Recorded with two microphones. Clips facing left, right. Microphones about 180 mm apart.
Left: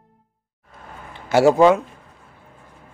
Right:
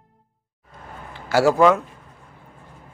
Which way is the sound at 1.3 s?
25° left (ahead or behind).